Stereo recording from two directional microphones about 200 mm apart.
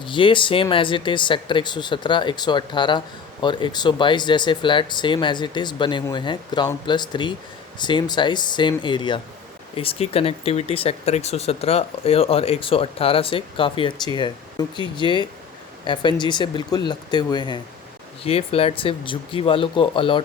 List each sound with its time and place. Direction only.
0.0 s speech: 25° left (ahead or behind)